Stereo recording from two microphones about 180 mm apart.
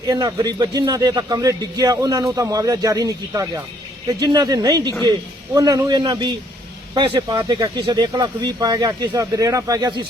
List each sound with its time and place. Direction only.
0.1 s a man's voice: 20° right (ahead or behind)